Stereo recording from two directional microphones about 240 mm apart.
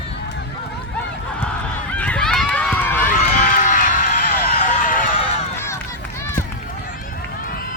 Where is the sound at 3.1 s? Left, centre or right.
Left.